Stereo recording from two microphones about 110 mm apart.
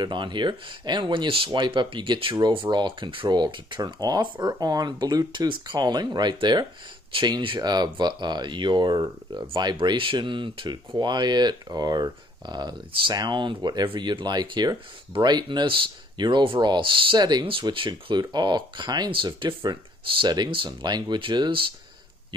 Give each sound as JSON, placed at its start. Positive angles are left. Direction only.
{"t": 0.0, "sound": "speech", "side_deg": -45}